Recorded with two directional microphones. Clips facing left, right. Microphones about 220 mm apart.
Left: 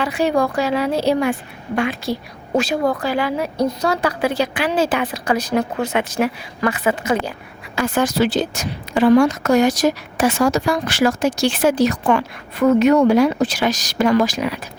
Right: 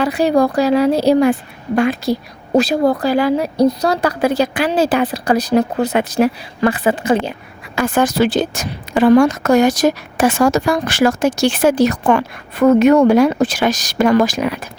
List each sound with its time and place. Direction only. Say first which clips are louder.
0.0 s speech: right 4 dB; 35° right (ahead or behind)
7.8 s a woman's voice: right 3 dB; 50° right (ahead or behind)